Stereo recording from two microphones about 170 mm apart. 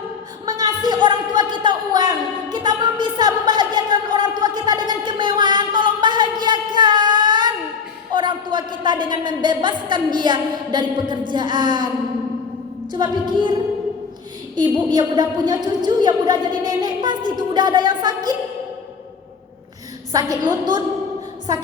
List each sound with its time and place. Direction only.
0.4 s a sound: 25° right (ahead or behind)
8.1 s a woman's voice: 25° right (ahead or behind)
12.9 s a woman's voice: 25° right (ahead or behind)
14.8 s a woman's voice: 25° right (ahead or behind)
20.1 s a woman's voice: 20° right (ahead or behind)